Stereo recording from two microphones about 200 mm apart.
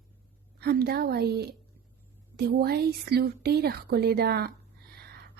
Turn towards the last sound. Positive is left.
turn(degrees=-50)  # may be behind; listen again after turning